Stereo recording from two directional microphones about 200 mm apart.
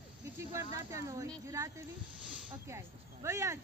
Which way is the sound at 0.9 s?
15° right (ahead or behind).